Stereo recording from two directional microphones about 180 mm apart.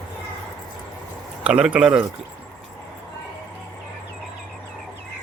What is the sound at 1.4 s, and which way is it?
Speech, 5° right (ahead or behind).